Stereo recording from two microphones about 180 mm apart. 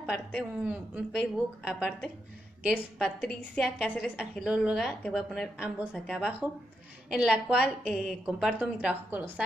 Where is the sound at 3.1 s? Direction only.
5° left (ahead or behind).